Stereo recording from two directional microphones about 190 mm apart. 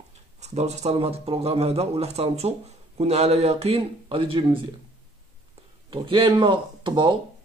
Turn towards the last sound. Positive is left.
turn(degrees=-25)  # may be behind; listen again after turning